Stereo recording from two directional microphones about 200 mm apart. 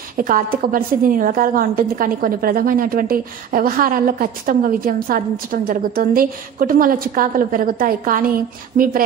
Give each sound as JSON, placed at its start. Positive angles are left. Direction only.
{"t": 0.2, "sound": "a woman's voice", "side_deg": -45}